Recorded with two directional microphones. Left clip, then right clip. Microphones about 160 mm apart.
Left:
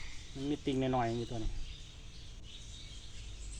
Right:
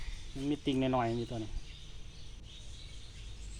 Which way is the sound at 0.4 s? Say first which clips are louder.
Right 2 dB; 40° right (ahead or behind).